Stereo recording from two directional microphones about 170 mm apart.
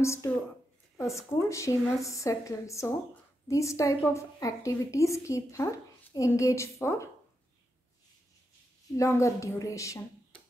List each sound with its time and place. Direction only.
0.0 s a woman's voice: 15° left (ahead or behind)
8.9 s a woman's voice: 20° left (ahead or behind)